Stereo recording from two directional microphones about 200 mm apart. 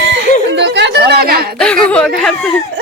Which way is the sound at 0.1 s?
60° right (ahead or behind).